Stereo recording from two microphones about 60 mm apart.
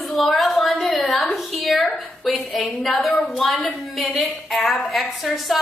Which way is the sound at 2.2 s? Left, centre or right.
Centre.